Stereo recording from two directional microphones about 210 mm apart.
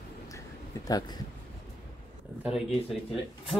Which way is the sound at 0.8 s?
20° left (ahead or behind).